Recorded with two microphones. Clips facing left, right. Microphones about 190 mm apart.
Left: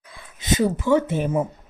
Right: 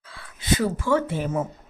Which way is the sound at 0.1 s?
20° left (ahead or behind).